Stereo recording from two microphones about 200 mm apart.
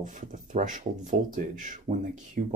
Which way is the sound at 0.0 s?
40° right (ahead or behind).